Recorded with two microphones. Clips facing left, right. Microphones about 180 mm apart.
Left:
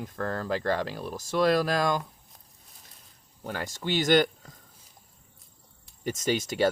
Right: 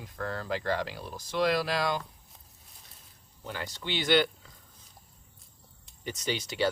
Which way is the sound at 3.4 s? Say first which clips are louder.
Left 4 dB; 50° left (ahead or behind).